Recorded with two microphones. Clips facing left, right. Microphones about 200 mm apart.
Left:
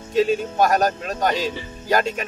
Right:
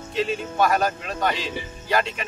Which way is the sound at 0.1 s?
40° left (ahead or behind).